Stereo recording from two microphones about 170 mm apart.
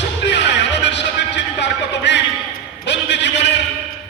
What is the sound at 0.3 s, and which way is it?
Music, 90° left.